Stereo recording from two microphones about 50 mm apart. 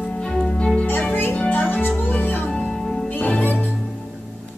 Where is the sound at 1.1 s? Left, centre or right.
Left.